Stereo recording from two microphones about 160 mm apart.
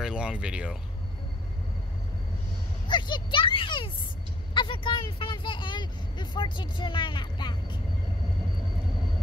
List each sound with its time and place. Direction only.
0.0 s speech: 5° right (ahead or behind)
2.9 s speech: 30° left (ahead or behind)